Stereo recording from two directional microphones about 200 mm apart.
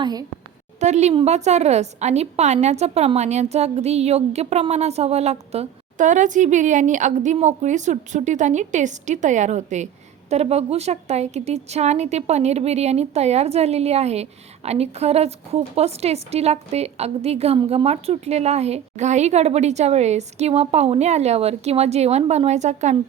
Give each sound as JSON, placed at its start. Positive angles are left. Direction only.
{"t": 0.0, "sound": "a woman's voice", "side_deg": -20}
{"t": 0.8, "sound": "a woman's voice", "side_deg": -35}